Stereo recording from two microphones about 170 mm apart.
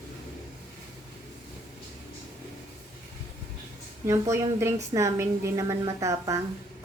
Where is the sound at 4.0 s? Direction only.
15° right (ahead or behind).